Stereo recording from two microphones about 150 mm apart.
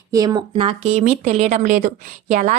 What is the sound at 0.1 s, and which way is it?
Speech, 25° right (ahead or behind).